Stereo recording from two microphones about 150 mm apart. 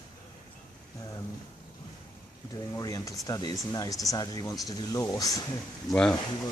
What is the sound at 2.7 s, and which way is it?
Speech, 20° left (ahead or behind).